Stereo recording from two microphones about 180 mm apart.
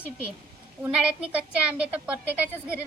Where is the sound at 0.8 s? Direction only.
5° right (ahead or behind).